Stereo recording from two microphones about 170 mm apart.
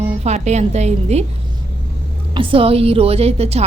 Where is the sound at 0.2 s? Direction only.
40° right (ahead or behind).